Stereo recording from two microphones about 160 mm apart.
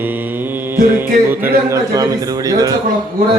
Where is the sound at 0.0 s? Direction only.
10° right (ahead or behind).